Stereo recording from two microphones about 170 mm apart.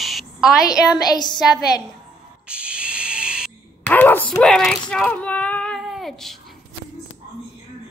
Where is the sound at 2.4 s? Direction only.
5° right (ahead or behind).